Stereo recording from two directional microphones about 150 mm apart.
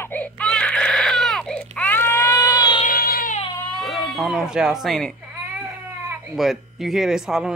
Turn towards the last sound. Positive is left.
turn(degrees=-5)  # may be behind; listen again after turning